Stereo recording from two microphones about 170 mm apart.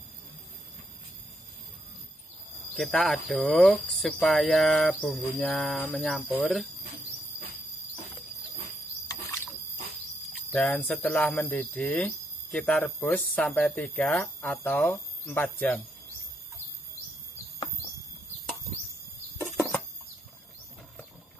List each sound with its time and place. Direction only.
2.7 s speech: centre (ahead or behind)
9.0 s squeal: 15° left (ahead or behind)
10.3 s speech: 5° left (ahead or behind)